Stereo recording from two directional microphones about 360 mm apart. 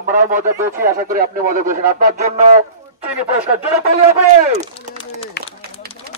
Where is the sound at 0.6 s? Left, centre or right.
Centre.